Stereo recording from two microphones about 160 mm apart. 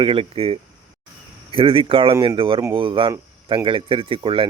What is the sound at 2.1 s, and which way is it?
Speech, 20° right (ahead or behind).